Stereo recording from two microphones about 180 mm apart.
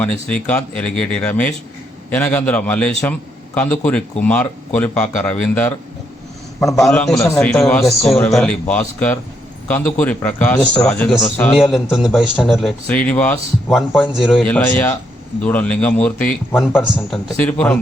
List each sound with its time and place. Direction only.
0.0 s speech: 5° left (ahead or behind)
6.8 s a man's voice: 5° left (ahead or behind)